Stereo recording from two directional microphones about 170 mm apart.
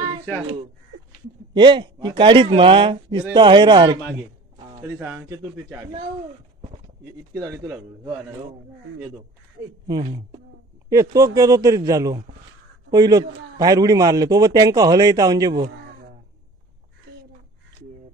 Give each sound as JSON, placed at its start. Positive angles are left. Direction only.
{"t": 1.5, "sound": "a man's voice", "side_deg": -25}
{"t": 4.8, "sound": "speech", "side_deg": -10}
{"t": 7.3, "sound": "speech", "side_deg": -20}
{"t": 9.8, "sound": "a man's voice", "side_deg": -25}